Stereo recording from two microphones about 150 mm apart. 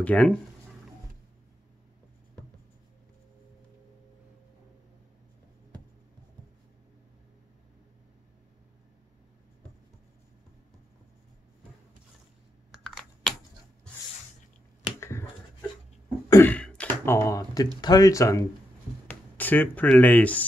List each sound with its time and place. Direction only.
0.0 s speech: 10° left (ahead or behind)
12.8 s computer keyboard: 5° left (ahead or behind)
15.0 s finger snapping: 15° left (ahead or behind)
16.3 s throat clearing: 15° left (ahead or behind)
17.7 s speech: 25° left (ahead or behind); by 20.4 s 10° left (ahead or behind)